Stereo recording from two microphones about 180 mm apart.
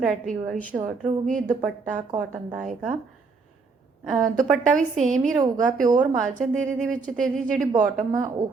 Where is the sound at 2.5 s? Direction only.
5° right (ahead or behind).